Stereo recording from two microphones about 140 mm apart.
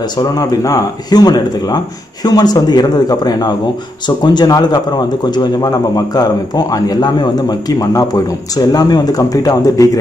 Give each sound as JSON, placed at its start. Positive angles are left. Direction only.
{"t": 0.2, "sound": "a man's voice", "side_deg": 25}